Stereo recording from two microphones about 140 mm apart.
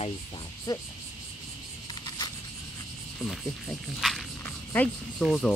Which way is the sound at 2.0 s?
30° left (ahead or behind).